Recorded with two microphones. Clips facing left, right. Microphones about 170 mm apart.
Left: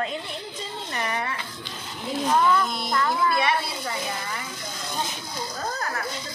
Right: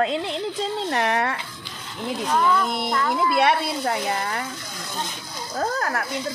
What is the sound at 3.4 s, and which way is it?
A woman's voice, 65° right (ahead or behind).